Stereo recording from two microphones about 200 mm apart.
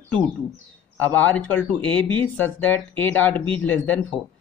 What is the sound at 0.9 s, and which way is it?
Speech, 5° left (ahead or behind).